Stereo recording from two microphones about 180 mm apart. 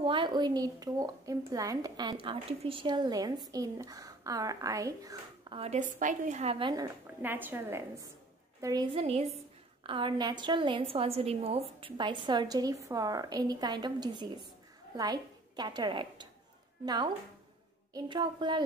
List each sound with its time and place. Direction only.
0.0 s a woman's voice: 25° right (ahead or behind)
6.8 s a woman's voice: 10° right (ahead or behind)
8.9 s a woman's voice: 35° right (ahead or behind)